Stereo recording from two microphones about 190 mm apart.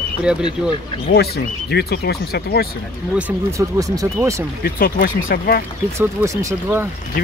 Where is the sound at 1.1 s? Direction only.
60° left (ahead or behind).